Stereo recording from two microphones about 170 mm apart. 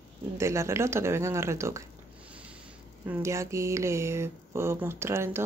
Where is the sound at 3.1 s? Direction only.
15° right (ahead or behind).